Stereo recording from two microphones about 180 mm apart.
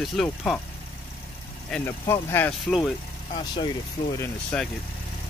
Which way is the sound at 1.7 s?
15° left (ahead or behind).